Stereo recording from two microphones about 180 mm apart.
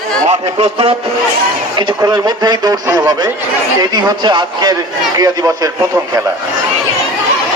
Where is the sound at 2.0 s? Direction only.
25° right (ahead or behind).